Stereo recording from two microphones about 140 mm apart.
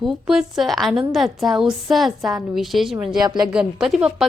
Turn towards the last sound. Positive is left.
turn(degrees=0)  # may be behind; listen again after turning